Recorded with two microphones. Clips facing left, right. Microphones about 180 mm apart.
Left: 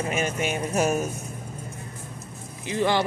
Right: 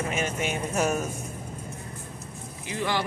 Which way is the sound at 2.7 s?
25° left (ahead or behind).